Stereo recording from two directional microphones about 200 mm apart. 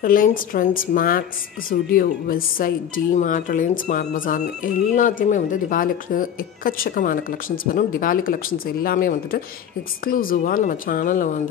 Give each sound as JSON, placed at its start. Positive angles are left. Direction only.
{"t": 0.0, "sound": "speech", "side_deg": 45}